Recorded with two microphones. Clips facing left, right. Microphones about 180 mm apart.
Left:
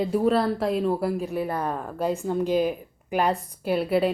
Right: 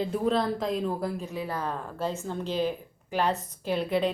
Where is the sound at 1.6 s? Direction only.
15° left (ahead or behind).